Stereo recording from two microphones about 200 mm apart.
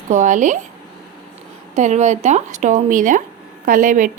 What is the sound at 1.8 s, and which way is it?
Speech, 35° right (ahead or behind).